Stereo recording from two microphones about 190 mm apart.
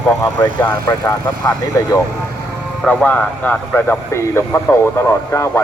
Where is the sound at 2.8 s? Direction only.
5° left (ahead or behind).